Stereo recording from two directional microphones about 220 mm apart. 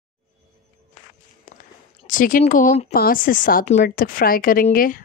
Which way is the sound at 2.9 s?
40° left (ahead or behind).